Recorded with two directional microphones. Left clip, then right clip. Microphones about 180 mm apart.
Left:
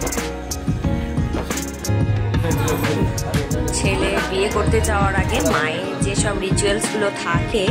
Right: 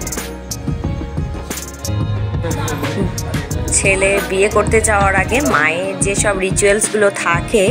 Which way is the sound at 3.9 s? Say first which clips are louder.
Right 8 dB; 20° right (ahead or behind).